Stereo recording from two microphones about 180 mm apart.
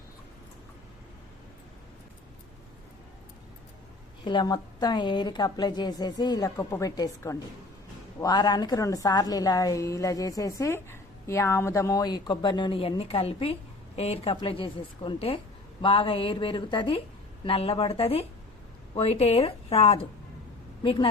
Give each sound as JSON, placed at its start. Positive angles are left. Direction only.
{"t": 4.2, "sound": "a woman's voice", "side_deg": 25}